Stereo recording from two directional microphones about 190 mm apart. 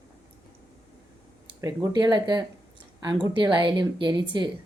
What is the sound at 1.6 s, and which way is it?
Speech, 20° right (ahead or behind).